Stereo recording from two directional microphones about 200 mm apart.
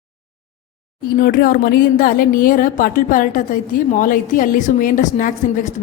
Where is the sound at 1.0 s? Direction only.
45° left (ahead or behind).